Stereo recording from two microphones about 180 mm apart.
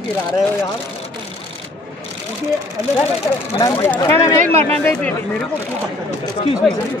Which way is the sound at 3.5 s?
15° left (ahead or behind).